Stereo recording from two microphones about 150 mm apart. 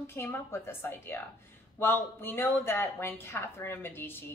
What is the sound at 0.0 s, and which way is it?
Speech, 15° left (ahead or behind).